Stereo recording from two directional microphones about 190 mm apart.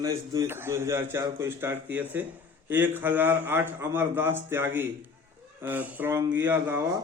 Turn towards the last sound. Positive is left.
turn(degrees=-15)  # may be behind; listen again after turning